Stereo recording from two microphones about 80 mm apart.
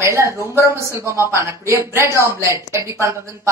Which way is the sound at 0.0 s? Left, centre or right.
Right.